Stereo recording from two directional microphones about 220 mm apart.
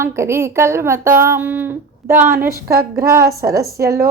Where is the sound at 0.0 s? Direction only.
15° right (ahead or behind).